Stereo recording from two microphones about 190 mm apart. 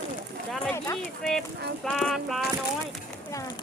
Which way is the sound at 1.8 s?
5° left (ahead or behind).